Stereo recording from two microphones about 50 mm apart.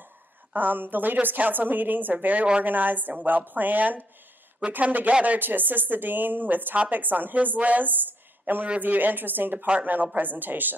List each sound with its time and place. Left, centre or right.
0.6 s a woman's voice: right